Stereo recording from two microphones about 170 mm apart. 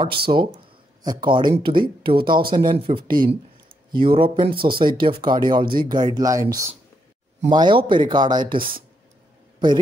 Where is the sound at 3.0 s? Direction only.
60° right (ahead or behind).